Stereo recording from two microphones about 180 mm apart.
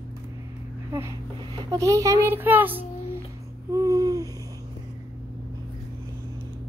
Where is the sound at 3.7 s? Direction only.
20° right (ahead or behind).